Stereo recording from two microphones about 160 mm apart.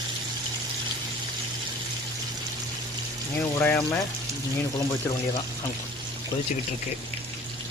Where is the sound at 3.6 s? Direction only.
15° left (ahead or behind).